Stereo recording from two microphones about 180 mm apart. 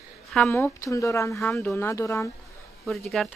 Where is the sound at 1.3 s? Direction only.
5° left (ahead or behind).